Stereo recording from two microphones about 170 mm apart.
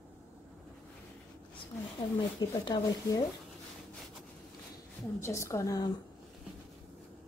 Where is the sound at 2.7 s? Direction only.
20° left (ahead or behind).